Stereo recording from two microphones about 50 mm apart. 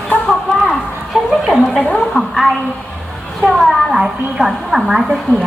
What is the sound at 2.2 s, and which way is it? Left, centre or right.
Speech, centre.